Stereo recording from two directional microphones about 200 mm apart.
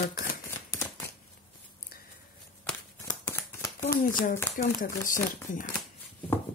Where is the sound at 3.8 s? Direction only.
40° left (ahead or behind).